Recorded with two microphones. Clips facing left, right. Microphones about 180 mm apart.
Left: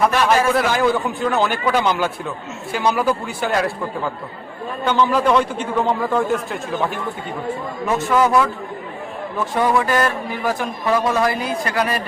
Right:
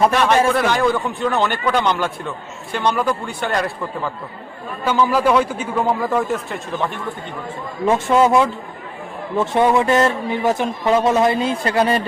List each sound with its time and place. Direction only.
0.5 s a man's voice: 5° left (ahead or behind)
4.9 s a man's voice: 5° right (ahead or behind)
7.9 s speech: 25° right (ahead or behind)